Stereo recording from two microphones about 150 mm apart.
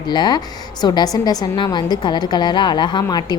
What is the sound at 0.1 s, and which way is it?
A woman's voice, 30° left (ahead or behind).